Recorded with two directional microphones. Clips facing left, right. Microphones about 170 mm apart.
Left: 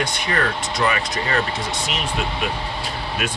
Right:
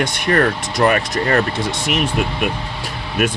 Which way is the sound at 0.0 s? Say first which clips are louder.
Right 6 dB; 50° right (ahead or behind).